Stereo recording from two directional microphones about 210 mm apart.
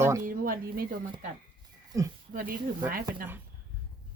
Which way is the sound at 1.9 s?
15° right (ahead or behind).